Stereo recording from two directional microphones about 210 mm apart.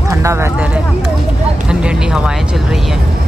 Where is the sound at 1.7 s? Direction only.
5° right (ahead or behind).